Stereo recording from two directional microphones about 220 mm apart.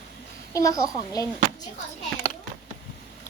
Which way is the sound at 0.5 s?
15° left (ahead or behind).